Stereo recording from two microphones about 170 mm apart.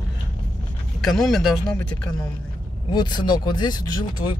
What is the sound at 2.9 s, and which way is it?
Speech, 25° left (ahead or behind).